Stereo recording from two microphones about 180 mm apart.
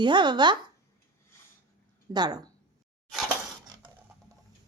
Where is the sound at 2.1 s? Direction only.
20° right (ahead or behind).